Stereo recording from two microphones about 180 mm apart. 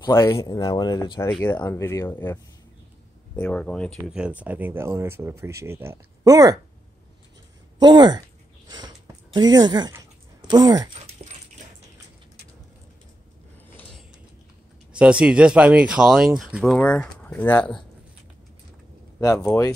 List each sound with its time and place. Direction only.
0.0 s speech: 15° left (ahead or behind)
1.3 s speech: 10° left (ahead or behind)
4.1 s speech: 5° right (ahead or behind)
7.8 s speech: 25° right (ahead or behind)
8.6 s a sound: 20° right (ahead or behind)
10.5 s speech: 20° right (ahead or behind)
11.2 s dog: 35° right (ahead or behind)
14.9 s speech: 5° right (ahead or behind)
19.1 s speech: 20° left (ahead or behind)